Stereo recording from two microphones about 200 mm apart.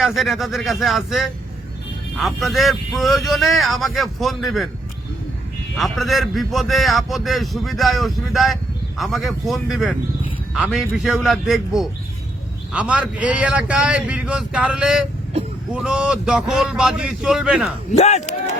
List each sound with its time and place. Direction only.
0.0 s a man's voice: centre (ahead or behind)
5.7 s a man's voice: centre (ahead or behind)
17.9 s speech: 35° left (ahead or behind)